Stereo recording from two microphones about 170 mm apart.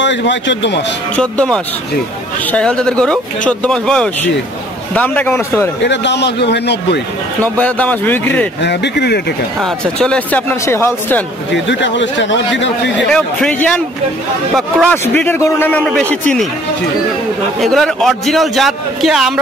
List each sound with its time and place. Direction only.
0.0 s a man's voice: 90° left
1.1 s a man's voice: 5° left (ahead or behind)
5.9 s a man's voice: 90° left
7.4 s a man's voice: 10° left (ahead or behind)
8.6 s speech: 85° left
9.6 s a man's voice: 5° left (ahead or behind)
11.5 s a man's voice: 90° left
13.1 s a man's voice: 5° left (ahead or behind)
17.6 s a man's voice: centre (ahead or behind)